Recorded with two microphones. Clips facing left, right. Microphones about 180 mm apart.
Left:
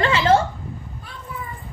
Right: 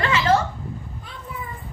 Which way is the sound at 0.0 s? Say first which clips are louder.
Left 2 dB; 30° left (ahead or behind).